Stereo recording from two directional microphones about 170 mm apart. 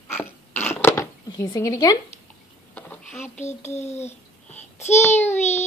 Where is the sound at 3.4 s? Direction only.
40° left (ahead or behind).